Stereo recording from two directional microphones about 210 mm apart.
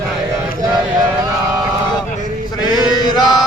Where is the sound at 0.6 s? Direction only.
20° right (ahead or behind).